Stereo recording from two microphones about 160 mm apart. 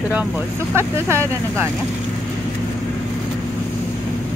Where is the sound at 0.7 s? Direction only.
15° right (ahead or behind).